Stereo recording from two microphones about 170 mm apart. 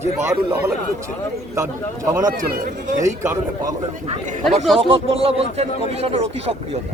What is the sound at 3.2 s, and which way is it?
Speech, 15° right (ahead or behind).